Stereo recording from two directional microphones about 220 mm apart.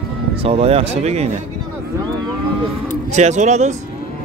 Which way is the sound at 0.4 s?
25° right (ahead or behind).